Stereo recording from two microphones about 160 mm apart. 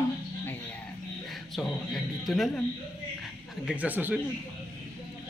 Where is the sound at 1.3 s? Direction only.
Centre (ahead or behind).